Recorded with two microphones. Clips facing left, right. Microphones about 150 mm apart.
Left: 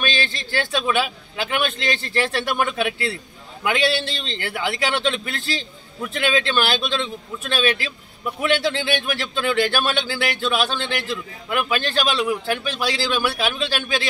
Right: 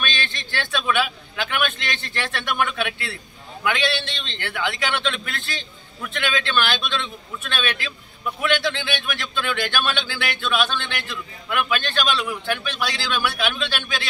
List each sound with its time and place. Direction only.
0.0 s speech: 35° left (ahead or behind)